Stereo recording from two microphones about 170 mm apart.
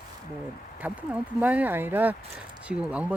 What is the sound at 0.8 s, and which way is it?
Speech, 10° right (ahead or behind).